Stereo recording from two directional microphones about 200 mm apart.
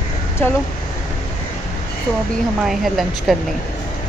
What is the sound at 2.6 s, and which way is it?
Speech, centre (ahead or behind).